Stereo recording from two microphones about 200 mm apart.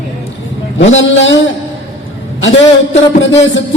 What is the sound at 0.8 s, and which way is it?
Speech, 70° left (ahead or behind).